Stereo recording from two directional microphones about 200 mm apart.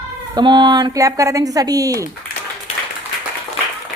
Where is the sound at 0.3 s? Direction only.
20° right (ahead or behind).